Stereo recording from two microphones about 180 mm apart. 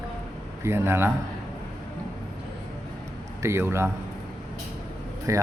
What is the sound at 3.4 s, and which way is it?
Speech, 15° right (ahead or behind).